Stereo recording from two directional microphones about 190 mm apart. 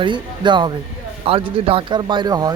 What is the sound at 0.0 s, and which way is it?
Speech, 25° right (ahead or behind).